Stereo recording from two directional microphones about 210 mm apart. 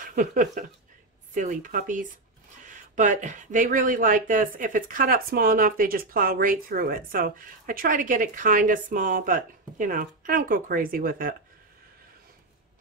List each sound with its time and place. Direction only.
0.0 s speech: 40° right (ahead or behind)